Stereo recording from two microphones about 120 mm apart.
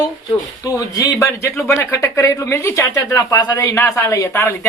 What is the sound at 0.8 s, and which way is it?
Speech, 30° left (ahead or behind).